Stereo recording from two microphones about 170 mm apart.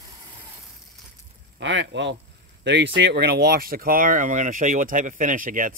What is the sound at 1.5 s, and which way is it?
Speech, 90° right.